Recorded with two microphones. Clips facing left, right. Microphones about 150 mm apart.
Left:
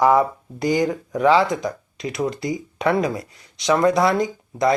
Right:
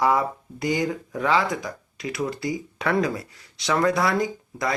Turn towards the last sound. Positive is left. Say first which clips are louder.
# left 6 dB
turn(degrees=20)  # may be behind; listen again after turning